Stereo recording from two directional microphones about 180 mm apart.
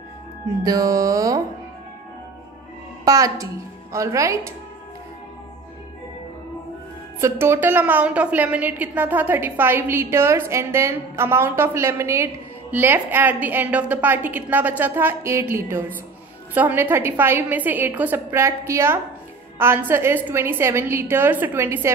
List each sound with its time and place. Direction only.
0.7 s music: 20° right (ahead or behind)
3.1 s a woman's voice: 20° right (ahead or behind)
7.2 s a woman's voice: 15° right (ahead or behind)